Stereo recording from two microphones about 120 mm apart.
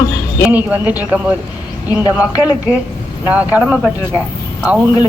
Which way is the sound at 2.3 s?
35° left (ahead or behind).